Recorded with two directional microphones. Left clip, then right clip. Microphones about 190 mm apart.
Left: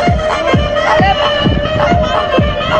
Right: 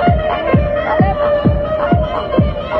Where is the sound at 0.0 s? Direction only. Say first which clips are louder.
Left 2 dB; 25° right (ahead or behind).